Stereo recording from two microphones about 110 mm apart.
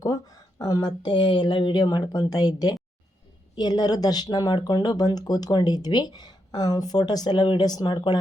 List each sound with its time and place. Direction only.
0.0 s speech: 35° left (ahead or behind)
1.8 s speech: 35° left (ahead or behind)
3.5 s speech: 40° left (ahead or behind)